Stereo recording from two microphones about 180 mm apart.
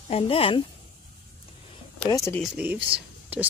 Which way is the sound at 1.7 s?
20° left (ahead or behind).